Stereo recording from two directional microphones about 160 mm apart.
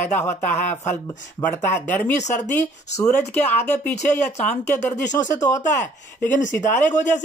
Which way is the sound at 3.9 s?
45° left (ahead or behind).